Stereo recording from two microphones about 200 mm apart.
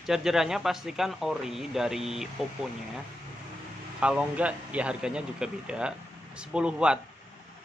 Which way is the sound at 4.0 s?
5° right (ahead or behind).